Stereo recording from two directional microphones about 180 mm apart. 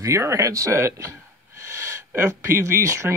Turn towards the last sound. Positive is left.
turn(degrees=-15)  # may be behind; listen again after turning